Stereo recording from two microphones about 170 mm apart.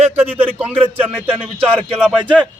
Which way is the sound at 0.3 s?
10° right (ahead or behind).